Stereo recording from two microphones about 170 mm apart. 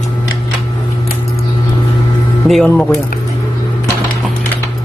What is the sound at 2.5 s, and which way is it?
Speech, 5° left (ahead or behind).